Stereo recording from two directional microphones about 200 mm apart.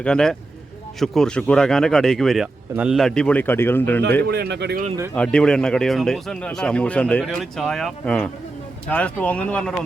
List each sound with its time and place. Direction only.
0.0 s a man's voice: 5° left (ahead or behind)
4.2 s speech: 50° right (ahead or behind)
5.1 s a man's voice: 5° left (ahead or behind)